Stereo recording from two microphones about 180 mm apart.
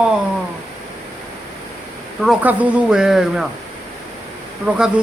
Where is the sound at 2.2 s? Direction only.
5° right (ahead or behind).